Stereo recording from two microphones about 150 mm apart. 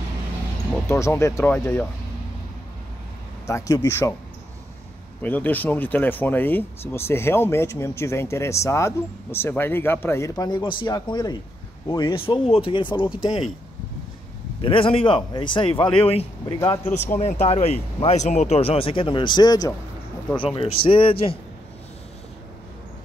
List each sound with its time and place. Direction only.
0.8 s speech: 20° left (ahead or behind)
3.4 s a man's voice: 20° left (ahead or behind)
5.2 s speech: 10° left (ahead or behind); by 13.5 s 35° left (ahead or behind)
14.6 s speech: 35° left (ahead or behind)
16.4 s a man's voice: 25° left (ahead or behind)
17.1 s speech: 50° left (ahead or behind)